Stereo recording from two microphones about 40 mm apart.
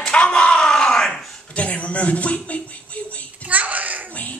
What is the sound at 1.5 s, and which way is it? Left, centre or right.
A man's voice, left.